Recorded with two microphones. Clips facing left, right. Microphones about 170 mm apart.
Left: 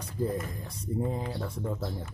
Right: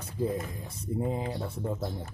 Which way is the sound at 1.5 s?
25° right (ahead or behind).